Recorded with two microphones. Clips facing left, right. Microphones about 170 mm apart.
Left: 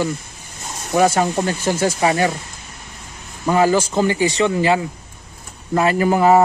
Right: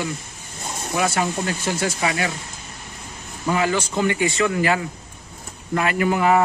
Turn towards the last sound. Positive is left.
turn(degrees=35)  # may be behind; listen again after turning